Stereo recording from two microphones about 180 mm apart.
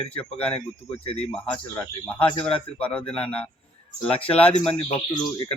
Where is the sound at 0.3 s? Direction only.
5° left (ahead or behind).